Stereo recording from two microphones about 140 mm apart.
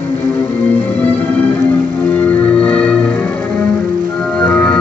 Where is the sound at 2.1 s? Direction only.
10° left (ahead or behind).